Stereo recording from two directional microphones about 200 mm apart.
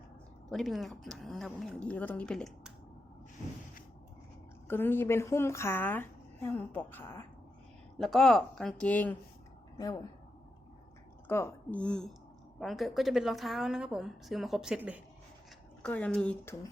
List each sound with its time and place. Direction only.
0.5 s a woman's voice: centre (ahead or behind)
4.7 s a woman's voice: 10° left (ahead or behind)
9.7 s speech: 20° left (ahead or behind)
11.3 s a woman's voice: 10° left (ahead or behind); by 15.0 s 5° right (ahead or behind)
15.8 s a woman's voice: 5° left (ahead or behind)